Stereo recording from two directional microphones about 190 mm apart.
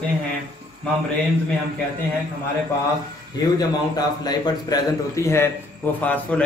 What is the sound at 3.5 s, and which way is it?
A man's voice, 20° left (ahead or behind).